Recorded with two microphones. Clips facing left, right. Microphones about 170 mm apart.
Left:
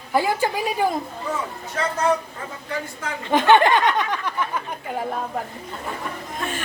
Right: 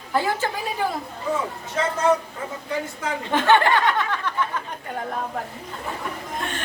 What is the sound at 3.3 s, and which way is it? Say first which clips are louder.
Snicker: left 3 dB; 15° left (ahead or behind).